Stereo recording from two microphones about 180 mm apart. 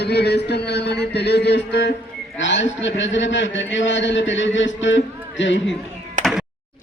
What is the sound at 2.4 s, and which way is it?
A man's voice, 90° left.